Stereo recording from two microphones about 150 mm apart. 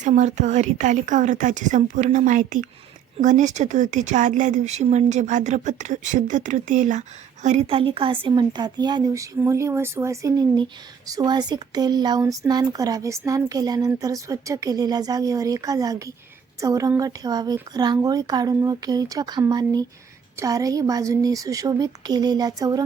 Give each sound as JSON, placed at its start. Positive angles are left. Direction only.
{"t": 0.0, "sound": "a woman's voice", "side_deg": -50}